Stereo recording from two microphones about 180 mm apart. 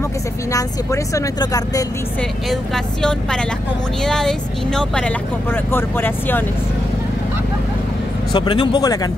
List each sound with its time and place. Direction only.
0.5 s a woman's voice: 15° left (ahead or behind)
2.5 s speech: 5° left (ahead or behind)
8.3 s a woman's voice: 25° left (ahead or behind)